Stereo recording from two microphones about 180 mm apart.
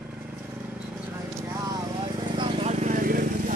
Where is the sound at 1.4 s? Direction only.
20° right (ahead or behind); by 3.6 s 50° right (ahead or behind).